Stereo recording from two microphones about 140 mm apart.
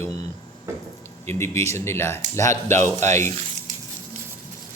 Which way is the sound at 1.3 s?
20° left (ahead or behind).